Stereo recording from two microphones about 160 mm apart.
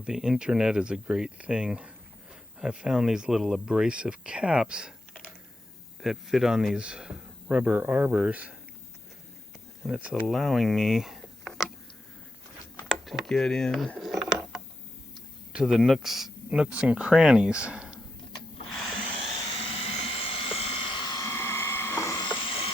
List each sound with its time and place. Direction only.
0.0 s speech: 5° right (ahead or behind)
9.8 s speech: 5° right (ahead or behind)
12.9 s mechanisms: centre (ahead or behind)
15.5 s speech: 5° right (ahead or behind)
19.8 s a sound: 35° left (ahead or behind)